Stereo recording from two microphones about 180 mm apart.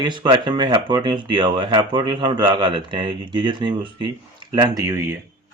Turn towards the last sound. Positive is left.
turn(degrees=-20)  # may be behind; listen again after turning